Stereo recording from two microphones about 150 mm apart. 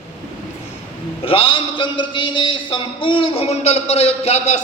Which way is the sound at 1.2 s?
40° left (ahead or behind).